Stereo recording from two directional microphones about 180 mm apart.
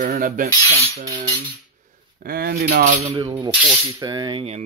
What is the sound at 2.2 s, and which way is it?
Speech, 55° right (ahead or behind).